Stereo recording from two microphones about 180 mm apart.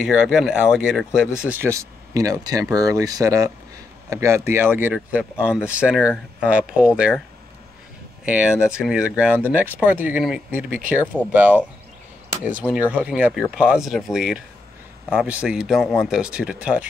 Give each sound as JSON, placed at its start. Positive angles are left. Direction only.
{"t": 0.0, "sound": "speech", "side_deg": -5}
{"t": 8.6, "sound": "speech", "side_deg": -5}
{"t": 12.7, "sound": "speech", "side_deg": -5}